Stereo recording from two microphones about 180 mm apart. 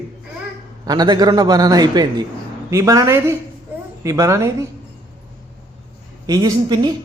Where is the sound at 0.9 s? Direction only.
20° right (ahead or behind).